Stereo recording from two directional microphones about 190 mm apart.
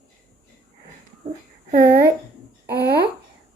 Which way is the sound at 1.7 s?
55° right (ahead or behind).